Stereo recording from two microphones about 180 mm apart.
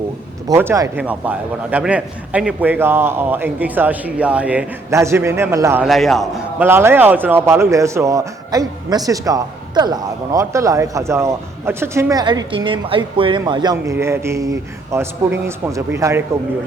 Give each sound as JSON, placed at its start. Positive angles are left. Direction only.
{"t": 0.4, "sound": "speech", "side_deg": -15}
{"t": 5.8, "sound": "a man's voice", "side_deg": 0}
{"t": 6.6, "sound": "speech", "side_deg": -15}